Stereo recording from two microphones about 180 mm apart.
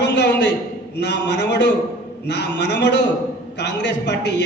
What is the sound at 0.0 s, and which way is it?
A man's voice, 70° left (ahead or behind).